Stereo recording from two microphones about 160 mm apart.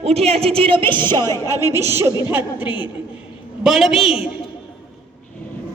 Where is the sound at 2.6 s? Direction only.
30° left (ahead or behind).